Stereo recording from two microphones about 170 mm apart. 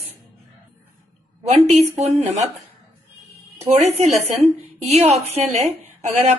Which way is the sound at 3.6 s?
40° right (ahead or behind).